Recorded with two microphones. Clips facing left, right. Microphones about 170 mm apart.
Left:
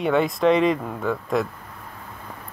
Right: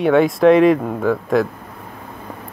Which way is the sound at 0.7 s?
50° right (ahead or behind).